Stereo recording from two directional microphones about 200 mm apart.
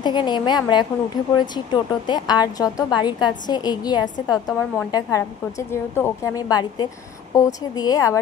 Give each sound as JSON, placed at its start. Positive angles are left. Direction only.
{"t": 0.0, "sound": "a woman's voice", "side_deg": 20}